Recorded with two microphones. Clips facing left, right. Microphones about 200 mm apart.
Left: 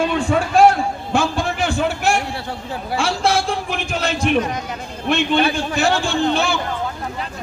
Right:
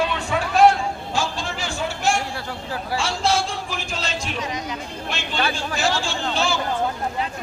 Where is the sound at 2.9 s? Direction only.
60° left (ahead or behind).